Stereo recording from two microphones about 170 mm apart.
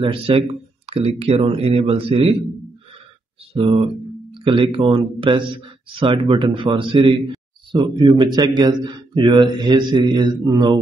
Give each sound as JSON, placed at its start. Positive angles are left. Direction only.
{"t": 0.0, "sound": "speech", "side_deg": -30}
{"t": 3.5, "sound": "a sound", "side_deg": -30}
{"t": 4.7, "sound": "a man's voice", "side_deg": -30}